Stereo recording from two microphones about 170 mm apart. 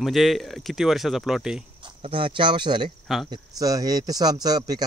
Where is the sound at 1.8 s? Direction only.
30° right (ahead or behind).